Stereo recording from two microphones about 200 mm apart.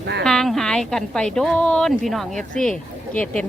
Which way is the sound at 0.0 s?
55° right (ahead or behind).